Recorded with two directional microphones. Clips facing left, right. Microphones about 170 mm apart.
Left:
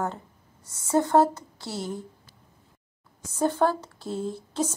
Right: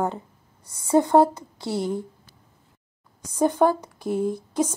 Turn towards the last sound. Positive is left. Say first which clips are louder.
# right 5 dB
turn(degrees=-15)  # may be behind; listen again after turning